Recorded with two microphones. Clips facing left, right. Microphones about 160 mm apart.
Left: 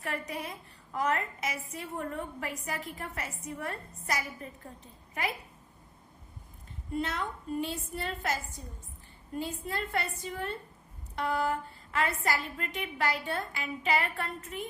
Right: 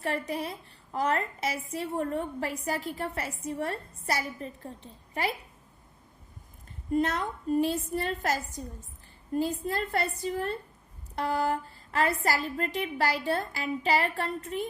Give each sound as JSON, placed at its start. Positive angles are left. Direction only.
{"t": 0.0, "sound": "a woman's voice", "side_deg": -30}
{"t": 6.9, "sound": "a woman's voice", "side_deg": -40}